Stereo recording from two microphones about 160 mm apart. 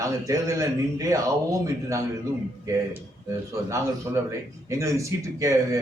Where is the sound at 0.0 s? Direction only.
20° right (ahead or behind).